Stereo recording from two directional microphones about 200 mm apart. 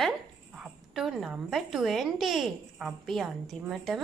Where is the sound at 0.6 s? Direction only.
Centre (ahead or behind).